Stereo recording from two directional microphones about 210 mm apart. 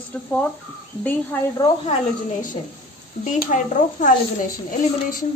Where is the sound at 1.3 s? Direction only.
10° left (ahead or behind).